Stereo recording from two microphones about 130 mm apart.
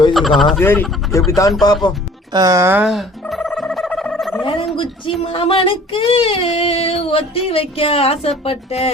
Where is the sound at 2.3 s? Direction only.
25° right (ahead or behind).